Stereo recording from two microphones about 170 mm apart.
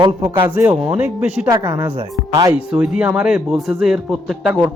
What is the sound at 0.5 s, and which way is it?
A man's voice, 10° right (ahead or behind).